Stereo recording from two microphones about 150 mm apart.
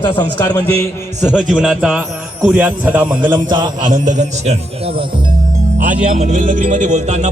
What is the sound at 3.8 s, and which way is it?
A man's voice, 55° right (ahead or behind).